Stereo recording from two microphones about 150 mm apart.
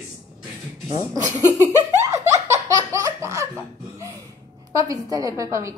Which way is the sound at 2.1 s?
20° right (ahead or behind).